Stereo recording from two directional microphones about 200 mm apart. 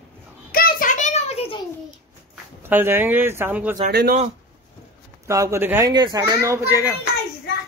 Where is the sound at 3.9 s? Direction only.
55° right (ahead or behind).